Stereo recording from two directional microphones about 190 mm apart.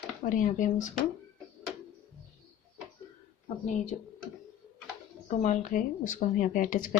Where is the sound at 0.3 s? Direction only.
45° left (ahead or behind).